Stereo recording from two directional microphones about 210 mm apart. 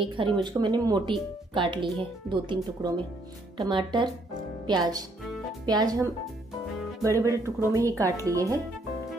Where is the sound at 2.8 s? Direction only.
20° right (ahead or behind).